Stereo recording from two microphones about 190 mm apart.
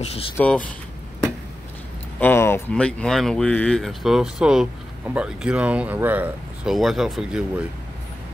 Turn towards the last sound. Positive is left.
turn(degrees=0)  # may be behind; listen again after turning